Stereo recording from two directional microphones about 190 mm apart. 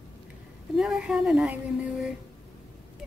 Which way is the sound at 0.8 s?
5° right (ahead or behind).